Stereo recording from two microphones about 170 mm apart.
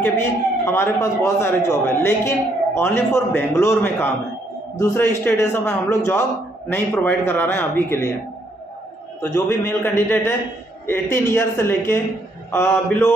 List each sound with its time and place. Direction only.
0.7 s a man's voice: 15° left (ahead or behind)
9.2 s a man's voice: 15° left (ahead or behind)